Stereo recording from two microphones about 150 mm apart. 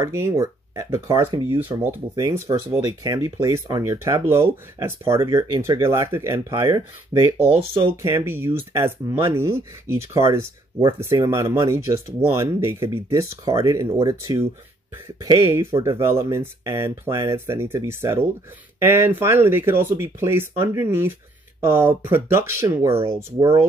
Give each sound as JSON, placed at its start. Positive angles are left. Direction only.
{"t": 0.0, "sound": "speech", "side_deg": -20}
{"t": 1.2, "sound": "speech", "side_deg": -35}
{"t": 1.6, "sound": "speech", "side_deg": -15}
{"t": 15.2, "sound": "speech", "side_deg": -35}
{"t": 15.5, "sound": "speech", "side_deg": -20}